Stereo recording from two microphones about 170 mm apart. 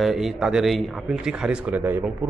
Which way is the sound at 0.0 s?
Centre (ahead or behind).